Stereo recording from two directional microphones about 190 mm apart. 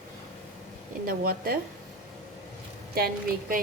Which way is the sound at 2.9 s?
50° right (ahead or behind).